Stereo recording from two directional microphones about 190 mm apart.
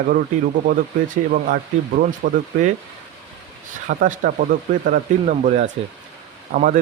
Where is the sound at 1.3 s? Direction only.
45° right (ahead or behind).